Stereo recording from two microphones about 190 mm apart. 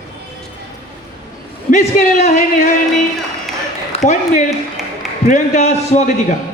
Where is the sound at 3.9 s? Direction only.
35° left (ahead or behind).